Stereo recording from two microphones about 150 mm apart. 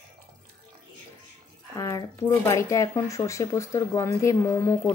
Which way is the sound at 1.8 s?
25° left (ahead or behind).